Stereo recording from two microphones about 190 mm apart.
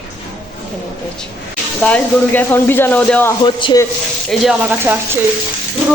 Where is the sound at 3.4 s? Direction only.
25° left (ahead or behind).